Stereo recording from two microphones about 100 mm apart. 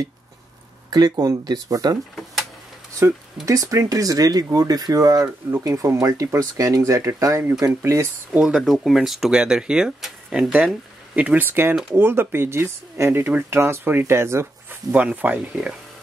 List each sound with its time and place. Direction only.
0.8 s speech: 40° right (ahead or behind)
3.4 s speech: 30° right (ahead or behind)
8.3 s speech: 5° right (ahead or behind)